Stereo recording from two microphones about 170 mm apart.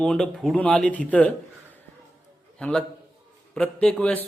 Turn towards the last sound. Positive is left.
turn(degrees=5)  # may be behind; listen again after turning